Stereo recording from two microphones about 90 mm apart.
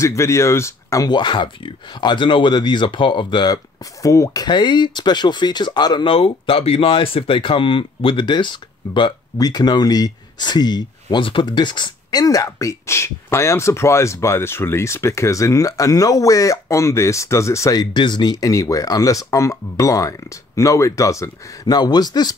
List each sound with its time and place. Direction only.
0.0 s speech: 35° left (ahead or behind)
1.0 s speech: 55° left (ahead or behind); by 4.5 s 40° left (ahead or behind)
4.5 s speech: 60° left (ahead or behind)
6.0 s speech: 80° left; by 9.1 s 60° left (ahead or behind)
9.4 s speech: 50° left (ahead or behind)
17.9 s speech: 55° left (ahead or behind)